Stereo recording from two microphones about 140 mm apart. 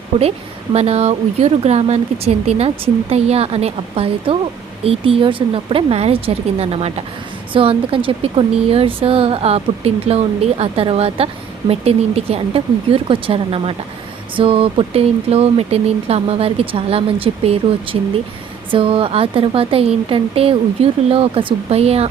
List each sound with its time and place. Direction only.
0.2 s a woman's voice: 50° right (ahead or behind)